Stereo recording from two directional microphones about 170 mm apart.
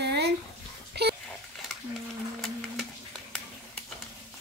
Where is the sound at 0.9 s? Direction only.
75° right (ahead or behind).